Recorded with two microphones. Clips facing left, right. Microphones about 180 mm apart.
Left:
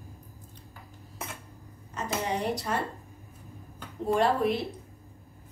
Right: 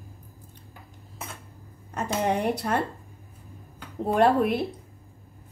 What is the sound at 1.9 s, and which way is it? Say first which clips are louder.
Speech: right 5 dB; 60° right (ahead or behind).